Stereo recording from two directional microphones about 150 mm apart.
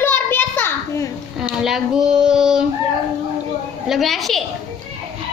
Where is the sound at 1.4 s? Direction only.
5° right (ahead or behind).